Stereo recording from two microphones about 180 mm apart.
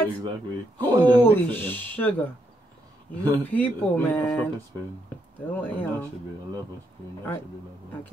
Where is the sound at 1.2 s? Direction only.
10° left (ahead or behind).